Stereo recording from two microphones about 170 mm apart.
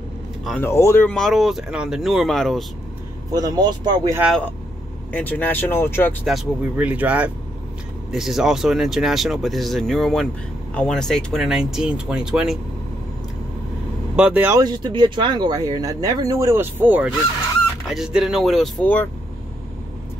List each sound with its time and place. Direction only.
0.6 s speech: 15° left (ahead or behind)
3.3 s speech: 20° right (ahead or behind)
5.1 s speech: 10° left (ahead or behind)
6.2 s speech: 5° right (ahead or behind)
14.1 s speech: 5° right (ahead or behind)
14.6 s speech: 25° right (ahead or behind); by 19.0 s 10° left (ahead or behind)